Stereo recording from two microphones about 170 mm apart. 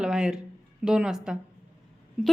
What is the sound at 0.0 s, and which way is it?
A woman's voice, 5° right (ahead or behind).